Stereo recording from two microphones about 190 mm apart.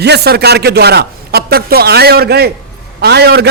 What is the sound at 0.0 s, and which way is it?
A man's voice, 60° right (ahead or behind).